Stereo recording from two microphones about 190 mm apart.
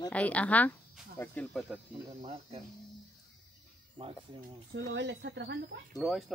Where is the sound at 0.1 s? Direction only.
5° left (ahead or behind).